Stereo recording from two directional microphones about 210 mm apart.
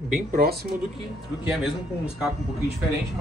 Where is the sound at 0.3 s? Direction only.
45° right (ahead or behind).